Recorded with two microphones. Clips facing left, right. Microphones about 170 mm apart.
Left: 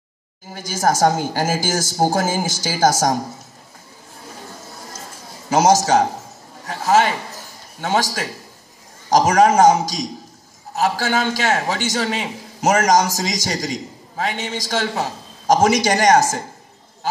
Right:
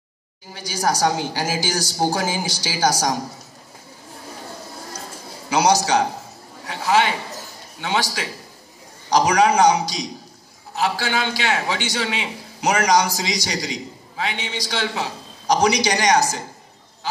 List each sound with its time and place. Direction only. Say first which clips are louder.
0.5 s a man's voice: left 3 dB; 45° left (ahead or behind)
5.5 s a man's voice: left 3 dB; 45° left (ahead or behind)
17.0 s goat: left 4 dB; 50° left (ahead or behind)